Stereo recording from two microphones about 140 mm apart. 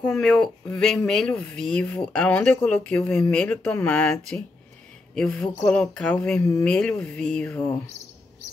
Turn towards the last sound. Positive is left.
turn(degrees=10)  # may be behind; listen again after turning